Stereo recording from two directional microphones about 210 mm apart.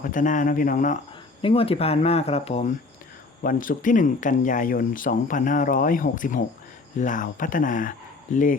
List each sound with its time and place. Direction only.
0.0 s speech: 40° left (ahead or behind)
1.4 s speech: 25° left (ahead or behind)